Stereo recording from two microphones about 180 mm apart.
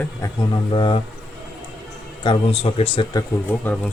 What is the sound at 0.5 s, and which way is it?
Speech, 25° left (ahead or behind).